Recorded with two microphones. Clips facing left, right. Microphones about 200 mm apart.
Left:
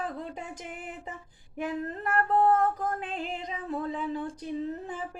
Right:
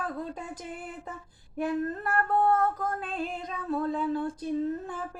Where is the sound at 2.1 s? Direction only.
25° left (ahead or behind).